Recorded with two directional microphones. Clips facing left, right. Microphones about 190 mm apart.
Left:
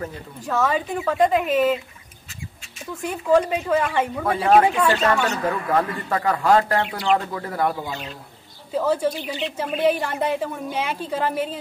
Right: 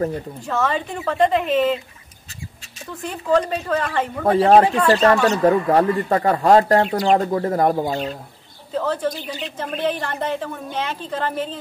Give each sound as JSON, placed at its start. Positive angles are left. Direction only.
{"t": 0.5, "sound": "a woman's voice", "side_deg": 5}
{"t": 3.0, "sound": "a woman's voice", "side_deg": 10}
{"t": 4.3, "sound": "speech", "side_deg": -35}
{"t": 8.7, "sound": "a woman's voice", "side_deg": 10}